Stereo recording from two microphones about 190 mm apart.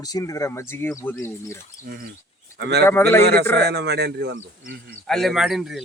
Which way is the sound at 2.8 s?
10° left (ahead or behind).